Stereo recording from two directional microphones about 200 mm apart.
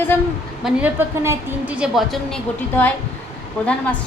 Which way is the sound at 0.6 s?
10° right (ahead or behind).